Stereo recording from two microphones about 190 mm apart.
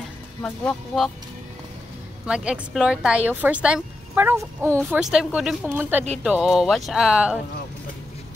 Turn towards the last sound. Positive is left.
turn(degrees=-5)  # may be behind; listen again after turning